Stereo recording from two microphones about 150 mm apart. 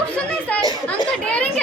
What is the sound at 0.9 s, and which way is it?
Speech, 10° left (ahead or behind).